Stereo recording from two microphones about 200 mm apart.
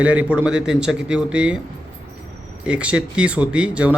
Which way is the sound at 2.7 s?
5° right (ahead or behind).